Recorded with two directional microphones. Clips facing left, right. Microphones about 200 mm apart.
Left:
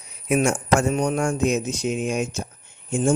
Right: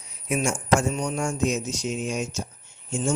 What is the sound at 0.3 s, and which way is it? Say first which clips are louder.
A man's voice: left 3 dB; 60° left (ahead or behind).